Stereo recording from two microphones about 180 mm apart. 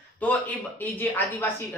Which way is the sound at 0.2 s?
10° left (ahead or behind).